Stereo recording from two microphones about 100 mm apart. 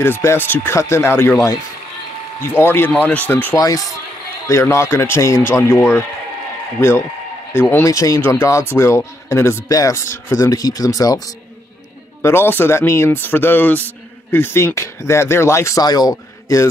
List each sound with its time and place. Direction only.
0.0 s speech: 25° left (ahead or behind)
2.5 s speech: 20° left (ahead or behind)
3.5 s speech: 35° left (ahead or behind)
7.8 s speech: 35° left (ahead or behind)
12.2 s speech: 25° left (ahead or behind)
15.8 s a man's voice: 40° left (ahead or behind)